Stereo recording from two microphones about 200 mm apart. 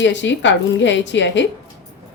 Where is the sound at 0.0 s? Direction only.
65° left (ahead or behind).